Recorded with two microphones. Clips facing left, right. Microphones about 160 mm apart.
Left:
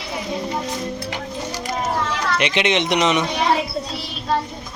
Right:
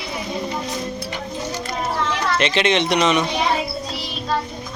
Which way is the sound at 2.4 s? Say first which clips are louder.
Right 1 dB; 15° left (ahead or behind).